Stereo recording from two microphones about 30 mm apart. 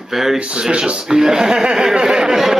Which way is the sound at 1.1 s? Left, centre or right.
Centre.